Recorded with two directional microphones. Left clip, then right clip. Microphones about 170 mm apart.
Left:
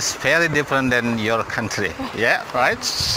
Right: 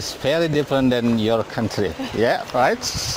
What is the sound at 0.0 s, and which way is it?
Speech, 70° right (ahead or behind).